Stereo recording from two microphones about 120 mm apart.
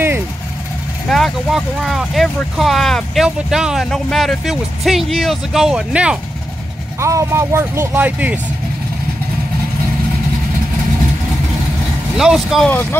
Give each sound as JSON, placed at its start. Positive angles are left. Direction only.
{"t": 1.0, "sound": "speech", "side_deg": 0}
{"t": 7.0, "sound": "speech", "side_deg": -25}
{"t": 12.2, "sound": "speech", "side_deg": -5}